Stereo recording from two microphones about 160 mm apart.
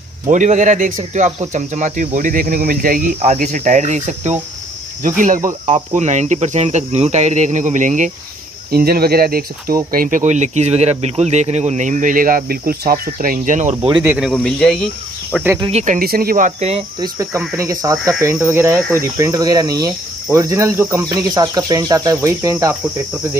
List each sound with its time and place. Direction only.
0.3 s speech: 50° right (ahead or behind)
3.3 s speech: 45° right (ahead or behind)
8.7 s speech: 75° right (ahead or behind)
9.8 s speech: 60° right (ahead or behind)
14.0 s speech: 5° right (ahead or behind)
15.7 s speech: 45° right (ahead or behind)
16.0 s speech: 65° right (ahead or behind); by 16.8 s 45° right (ahead or behind)
17.0 s speech: 20° right (ahead or behind)